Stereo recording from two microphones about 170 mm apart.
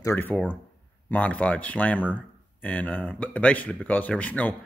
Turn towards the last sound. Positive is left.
turn(degrees=10)  # may be behind; listen again after turning